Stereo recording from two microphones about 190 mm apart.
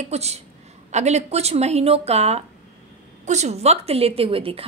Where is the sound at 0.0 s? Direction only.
35° right (ahead or behind).